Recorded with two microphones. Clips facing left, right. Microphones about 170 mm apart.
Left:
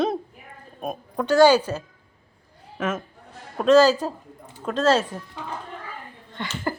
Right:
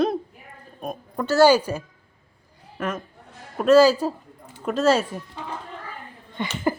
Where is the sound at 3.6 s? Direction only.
10° right (ahead or behind).